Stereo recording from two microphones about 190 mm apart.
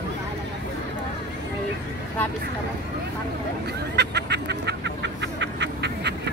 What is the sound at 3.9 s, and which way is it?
Fowl, 60° right (ahead or behind).